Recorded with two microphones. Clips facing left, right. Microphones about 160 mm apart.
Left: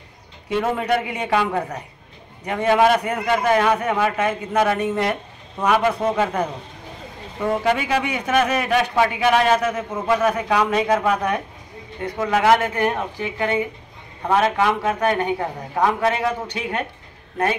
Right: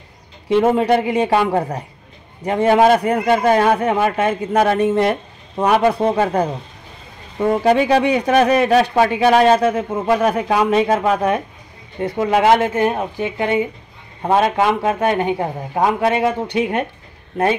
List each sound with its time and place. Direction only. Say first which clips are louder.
0.5 s a man's voice: right 7 dB; 25° right (ahead or behind)
7.6 s a man's voice: right 10 dB; 35° right (ahead or behind); by 16.8 s 20° right (ahead or behind)